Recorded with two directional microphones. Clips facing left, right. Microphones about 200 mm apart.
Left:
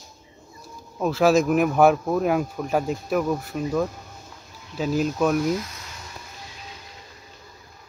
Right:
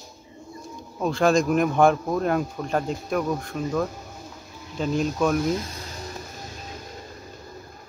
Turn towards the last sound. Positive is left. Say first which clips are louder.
# right 6 dB
turn(degrees=-45)  # may be behind; listen again after turning